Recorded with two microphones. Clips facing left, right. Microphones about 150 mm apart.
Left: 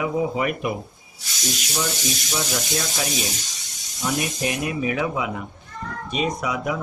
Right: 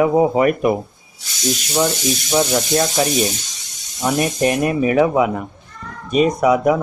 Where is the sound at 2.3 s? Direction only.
50° right (ahead or behind).